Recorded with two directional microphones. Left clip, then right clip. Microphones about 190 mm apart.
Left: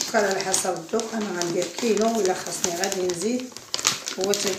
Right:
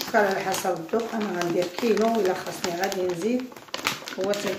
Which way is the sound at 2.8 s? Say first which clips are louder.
Right 1 dB; centre (ahead or behind).